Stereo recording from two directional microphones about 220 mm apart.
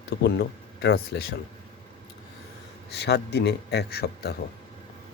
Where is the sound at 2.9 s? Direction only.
50° left (ahead or behind).